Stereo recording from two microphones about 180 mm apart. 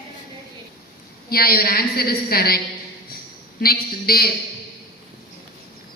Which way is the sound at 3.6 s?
55° left (ahead or behind).